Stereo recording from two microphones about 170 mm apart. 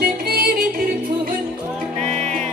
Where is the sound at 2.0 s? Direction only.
40° right (ahead or behind).